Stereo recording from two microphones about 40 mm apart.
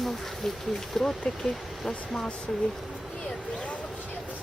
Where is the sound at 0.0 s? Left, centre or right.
Centre.